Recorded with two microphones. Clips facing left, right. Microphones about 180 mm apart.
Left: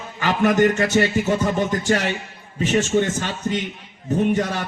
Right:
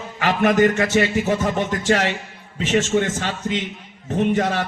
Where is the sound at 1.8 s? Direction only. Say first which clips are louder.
Right 5 dB; 75° right (ahead or behind).